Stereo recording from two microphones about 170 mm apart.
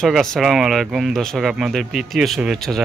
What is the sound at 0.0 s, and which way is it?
Speech, centre (ahead or behind).